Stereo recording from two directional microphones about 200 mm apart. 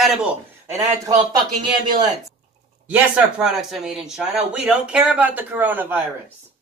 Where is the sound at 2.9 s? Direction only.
5° right (ahead or behind).